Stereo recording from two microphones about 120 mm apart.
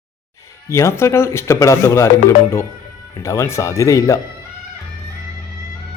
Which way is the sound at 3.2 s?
25° left (ahead or behind).